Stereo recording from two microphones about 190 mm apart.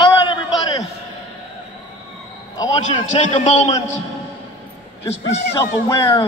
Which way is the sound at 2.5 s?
20° left (ahead or behind).